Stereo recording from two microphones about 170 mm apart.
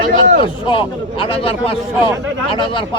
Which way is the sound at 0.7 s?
30° left (ahead or behind).